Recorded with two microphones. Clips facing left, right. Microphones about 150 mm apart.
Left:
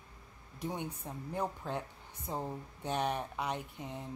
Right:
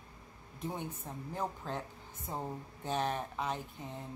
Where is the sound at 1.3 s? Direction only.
10° left (ahead or behind).